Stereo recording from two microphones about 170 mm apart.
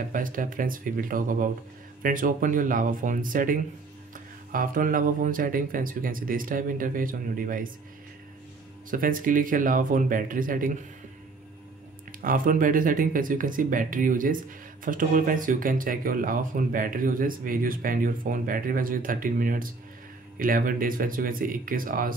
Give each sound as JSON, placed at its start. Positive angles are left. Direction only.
{"t": 0.1, "sound": "speech", "side_deg": -55}
{"t": 8.9, "sound": "speech", "side_deg": -55}
{"t": 12.2, "sound": "speech", "side_deg": -55}